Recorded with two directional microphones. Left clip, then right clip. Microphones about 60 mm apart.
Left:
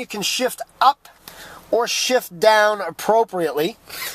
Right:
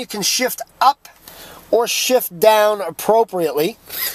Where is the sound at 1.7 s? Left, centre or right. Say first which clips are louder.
Right 3 dB; right.